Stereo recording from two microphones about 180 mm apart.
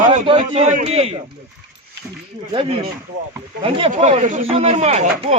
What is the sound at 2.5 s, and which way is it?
Speech, 25° right (ahead or behind).